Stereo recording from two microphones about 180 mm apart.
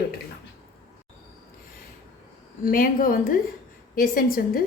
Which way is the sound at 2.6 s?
50° left (ahead or behind).